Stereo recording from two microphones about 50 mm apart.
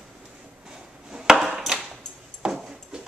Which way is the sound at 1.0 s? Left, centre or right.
Centre.